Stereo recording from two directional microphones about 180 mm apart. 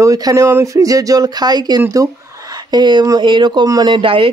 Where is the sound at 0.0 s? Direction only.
20° right (ahead or behind).